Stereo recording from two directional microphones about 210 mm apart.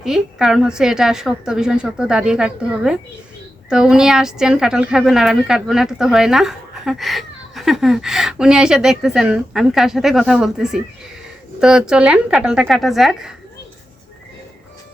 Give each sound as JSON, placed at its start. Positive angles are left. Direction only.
{"t": 0.0, "sound": "speech", "side_deg": 0}